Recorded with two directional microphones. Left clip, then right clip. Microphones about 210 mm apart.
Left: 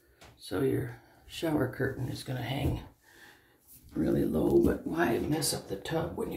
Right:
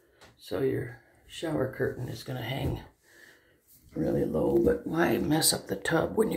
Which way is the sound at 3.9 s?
10° left (ahead or behind).